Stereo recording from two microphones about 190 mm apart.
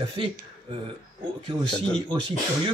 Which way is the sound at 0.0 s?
25° right (ahead or behind).